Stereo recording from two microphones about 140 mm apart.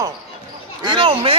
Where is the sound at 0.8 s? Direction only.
35° right (ahead or behind).